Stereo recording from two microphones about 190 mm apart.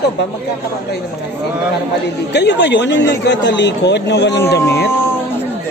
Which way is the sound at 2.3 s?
65° left (ahead or behind).